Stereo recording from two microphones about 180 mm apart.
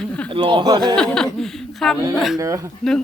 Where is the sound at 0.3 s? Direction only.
30° right (ahead or behind).